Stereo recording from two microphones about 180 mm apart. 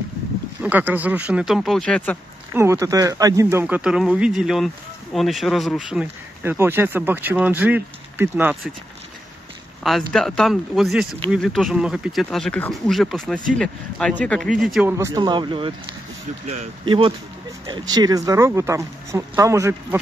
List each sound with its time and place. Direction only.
0.6 s speech: 10° right (ahead or behind); by 2.1 s 5° left (ahead or behind)
2.5 s speech: 15° right (ahead or behind)
9.8 s speech: centre (ahead or behind)
14.9 s speech: 15° right (ahead or behind)
16.8 s speech: 30° right (ahead or behind)